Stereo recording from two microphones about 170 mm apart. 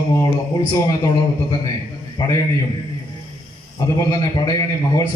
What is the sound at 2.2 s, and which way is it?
Speech, 25° left (ahead or behind).